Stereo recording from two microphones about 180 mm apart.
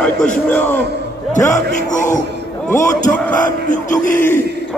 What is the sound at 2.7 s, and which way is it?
Speech, 15° left (ahead or behind).